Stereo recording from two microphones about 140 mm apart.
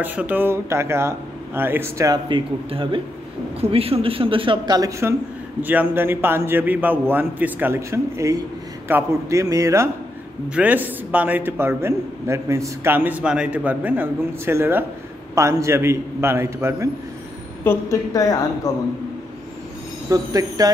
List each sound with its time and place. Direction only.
0.0 s a man's voice: 10° right (ahead or behind)
5.6 s a man's voice: 10° right (ahead or behind)
10.5 s a man's voice: 10° right (ahead or behind)
17.6 s a woman's voice: 25° left (ahead or behind)
20.1 s speech: 25° right (ahead or behind)